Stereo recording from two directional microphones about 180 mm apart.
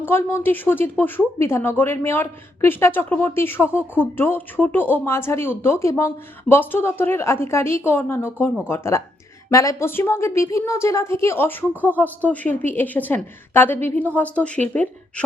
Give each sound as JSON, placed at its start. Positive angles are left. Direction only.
{"t": 0.0, "sound": "a woman's voice", "side_deg": 10}